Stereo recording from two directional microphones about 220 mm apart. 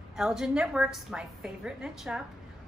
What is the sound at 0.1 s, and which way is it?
A woman's voice, centre (ahead or behind).